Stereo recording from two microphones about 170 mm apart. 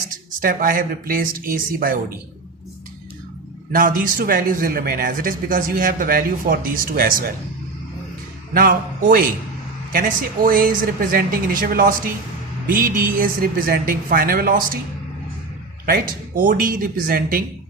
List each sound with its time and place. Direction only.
0.3 s a man's voice: 55° right (ahead or behind)
3.7 s a man's voice: 55° right (ahead or behind)
8.5 s a man's voice: 55° right (ahead or behind)
15.9 s a man's voice: 55° right (ahead or behind)